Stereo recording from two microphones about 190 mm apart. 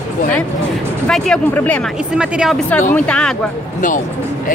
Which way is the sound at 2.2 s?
5° right (ahead or behind).